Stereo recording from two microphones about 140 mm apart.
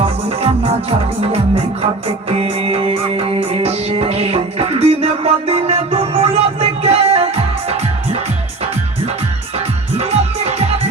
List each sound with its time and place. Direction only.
0.0 s music: 45° right (ahead or behind)
10.0 s music: 50° right (ahead or behind)